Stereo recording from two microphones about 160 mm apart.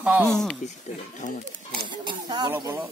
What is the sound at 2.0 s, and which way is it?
Snake, 25° right (ahead or behind).